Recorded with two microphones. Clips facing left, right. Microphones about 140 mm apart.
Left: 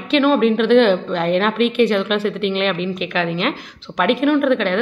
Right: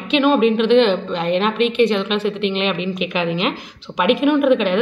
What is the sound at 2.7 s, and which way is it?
Speech, 40° left (ahead or behind).